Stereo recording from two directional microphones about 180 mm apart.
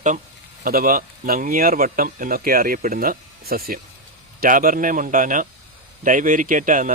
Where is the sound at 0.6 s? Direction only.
55° right (ahead or behind).